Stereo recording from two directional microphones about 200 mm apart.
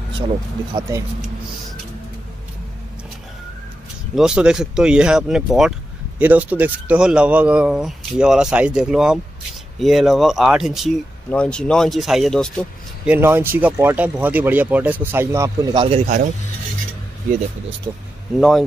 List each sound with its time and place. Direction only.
0.7 s speech: 15° right (ahead or behind)
4.1 s speech: 5° right (ahead or behind)
13.1 s speech: 10° right (ahead or behind)
17.9 s speech: 20° right (ahead or behind)